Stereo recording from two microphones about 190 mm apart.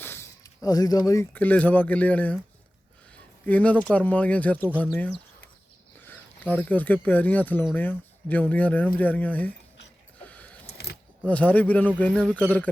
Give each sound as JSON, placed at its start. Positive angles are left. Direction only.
{"t": 0.0, "sound": "speech", "side_deg": 15}
{"t": 3.4, "sound": "speech", "side_deg": 10}
{"t": 10.2, "sound": "vehicle", "side_deg": 10}
{"t": 10.7, "sound": "a sound", "side_deg": 60}
{"t": 11.3, "sound": "speech", "side_deg": 10}